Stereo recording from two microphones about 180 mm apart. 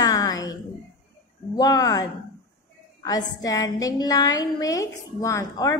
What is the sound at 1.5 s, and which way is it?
Speech, 20° left (ahead or behind).